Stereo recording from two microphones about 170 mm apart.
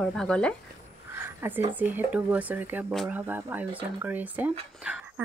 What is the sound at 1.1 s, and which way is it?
Speech, 15° right (ahead or behind).